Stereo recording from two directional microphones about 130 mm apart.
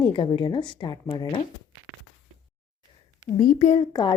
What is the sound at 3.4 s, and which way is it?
Speech, 70° left (ahead or behind).